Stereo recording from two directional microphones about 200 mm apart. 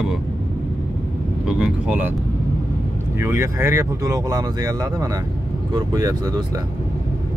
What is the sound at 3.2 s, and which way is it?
Speech, 15° right (ahead or behind).